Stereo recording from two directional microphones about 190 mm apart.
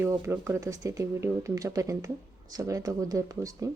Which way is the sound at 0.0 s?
15° right (ahead or behind).